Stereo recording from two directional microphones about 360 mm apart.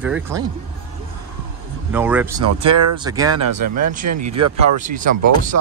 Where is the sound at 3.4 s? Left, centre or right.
Right.